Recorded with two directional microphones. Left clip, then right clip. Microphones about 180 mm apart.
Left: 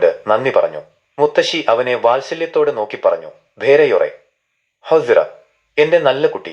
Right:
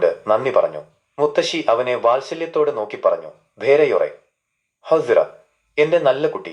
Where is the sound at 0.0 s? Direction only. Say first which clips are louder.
Left 3 dB; 20° left (ahead or behind).